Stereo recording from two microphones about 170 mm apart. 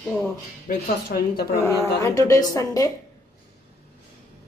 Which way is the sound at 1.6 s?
20° left (ahead or behind).